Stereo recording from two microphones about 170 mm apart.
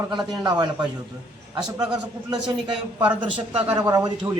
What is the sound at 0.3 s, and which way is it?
Speech, 25° right (ahead or behind).